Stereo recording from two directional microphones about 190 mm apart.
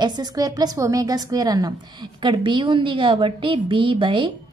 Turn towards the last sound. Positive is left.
turn(degrees=-25)  # may be behind; listen again after turning